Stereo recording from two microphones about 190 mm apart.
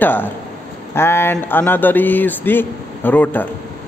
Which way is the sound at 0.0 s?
10° left (ahead or behind).